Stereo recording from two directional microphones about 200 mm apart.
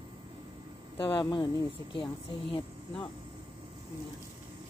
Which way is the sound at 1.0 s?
25° left (ahead or behind).